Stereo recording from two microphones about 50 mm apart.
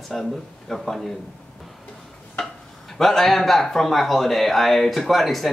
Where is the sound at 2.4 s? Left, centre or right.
Centre.